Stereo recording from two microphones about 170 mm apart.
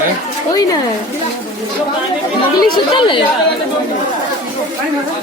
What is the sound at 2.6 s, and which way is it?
Speech, 30° left (ahead or behind).